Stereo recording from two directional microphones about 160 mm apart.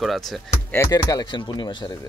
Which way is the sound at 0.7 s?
20° left (ahead or behind).